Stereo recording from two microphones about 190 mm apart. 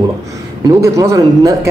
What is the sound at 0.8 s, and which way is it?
Speech, 15° right (ahead or behind).